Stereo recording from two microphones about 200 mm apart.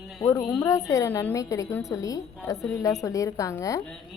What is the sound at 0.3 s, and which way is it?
A woman's voice, 15° left (ahead or behind).